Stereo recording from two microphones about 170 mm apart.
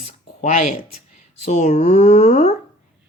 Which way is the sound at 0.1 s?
45° left (ahead or behind).